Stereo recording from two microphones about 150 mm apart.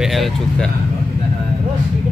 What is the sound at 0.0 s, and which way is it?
Speech, centre (ahead or behind).